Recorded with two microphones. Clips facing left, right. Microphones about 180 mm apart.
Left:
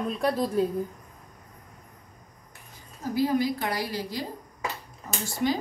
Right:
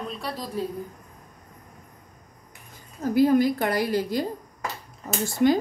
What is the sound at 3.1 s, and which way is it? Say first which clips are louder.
A woman's voice: right 6 dB; 55° right (ahead or behind).